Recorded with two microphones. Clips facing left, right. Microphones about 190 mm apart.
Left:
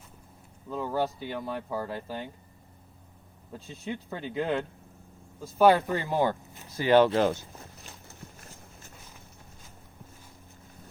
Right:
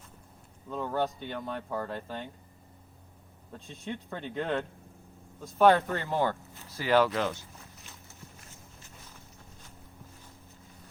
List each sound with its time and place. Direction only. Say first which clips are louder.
0.7 s speech: left 1 dB; 5° left (ahead or behind)
3.5 s speech: left 2 dB; 5° left (ahead or behind); by 7.3 s 30° left (ahead or behind)